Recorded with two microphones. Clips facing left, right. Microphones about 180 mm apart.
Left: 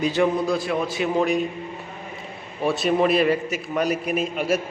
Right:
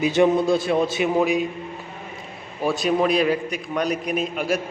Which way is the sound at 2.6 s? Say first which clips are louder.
Even; centre (ahead or behind).